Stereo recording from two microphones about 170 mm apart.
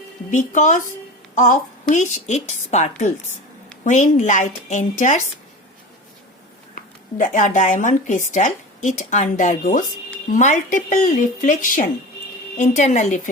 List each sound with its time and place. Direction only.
0.3 s speech: 45° left (ahead or behind)
6.7 s speech: 50° left (ahead or behind)